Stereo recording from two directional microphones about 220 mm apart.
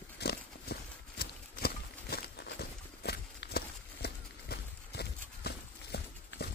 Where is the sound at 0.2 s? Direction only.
45° left (ahead or behind).